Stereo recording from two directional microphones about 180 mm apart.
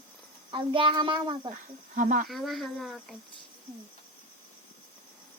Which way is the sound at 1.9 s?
50° right (ahead or behind).